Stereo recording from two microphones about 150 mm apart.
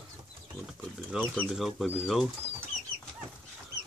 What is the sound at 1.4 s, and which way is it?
Speech, centre (ahead or behind).